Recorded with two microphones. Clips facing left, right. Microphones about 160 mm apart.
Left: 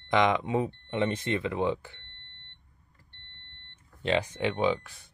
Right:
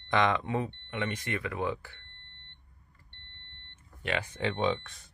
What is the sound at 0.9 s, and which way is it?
Speech, 30° left (ahead or behind).